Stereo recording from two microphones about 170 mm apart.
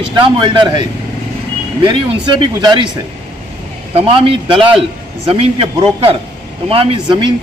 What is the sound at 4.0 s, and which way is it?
Speech, 30° right (ahead or behind).